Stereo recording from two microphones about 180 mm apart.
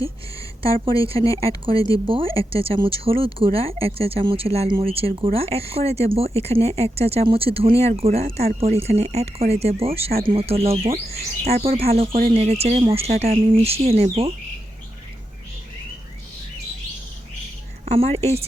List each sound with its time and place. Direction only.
1.0 s speech: 30° right (ahead or behind)
17.8 s speech: 35° right (ahead or behind)